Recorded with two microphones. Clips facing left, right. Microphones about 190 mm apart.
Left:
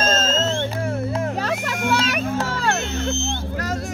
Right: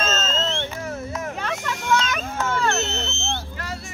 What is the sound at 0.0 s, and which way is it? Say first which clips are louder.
Music: left 4 dB; 40° left (ahead or behind).